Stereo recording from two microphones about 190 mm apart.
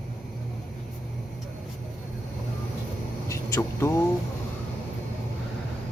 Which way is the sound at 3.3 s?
15° left (ahead or behind).